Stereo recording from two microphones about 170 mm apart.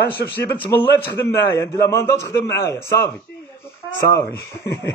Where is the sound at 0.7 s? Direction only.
10° left (ahead or behind).